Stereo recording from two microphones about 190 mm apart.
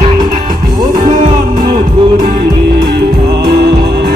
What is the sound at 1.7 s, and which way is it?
Music, 50° right (ahead or behind).